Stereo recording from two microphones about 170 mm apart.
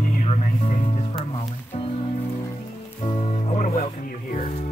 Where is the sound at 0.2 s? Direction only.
40° left (ahead or behind).